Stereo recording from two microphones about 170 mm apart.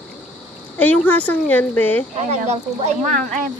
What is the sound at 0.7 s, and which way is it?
Speech, 10° left (ahead or behind).